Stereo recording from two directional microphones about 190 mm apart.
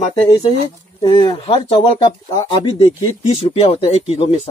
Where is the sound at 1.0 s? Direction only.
25° left (ahead or behind).